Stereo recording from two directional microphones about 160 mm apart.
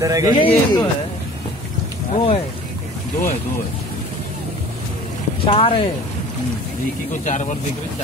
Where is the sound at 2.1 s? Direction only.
35° left (ahead or behind).